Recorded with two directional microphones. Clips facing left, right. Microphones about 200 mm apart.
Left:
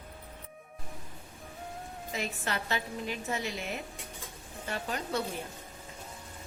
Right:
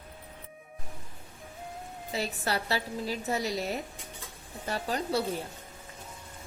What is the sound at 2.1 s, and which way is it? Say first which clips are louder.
A woman's voice: right 4 dB; 35° right (ahead or behind).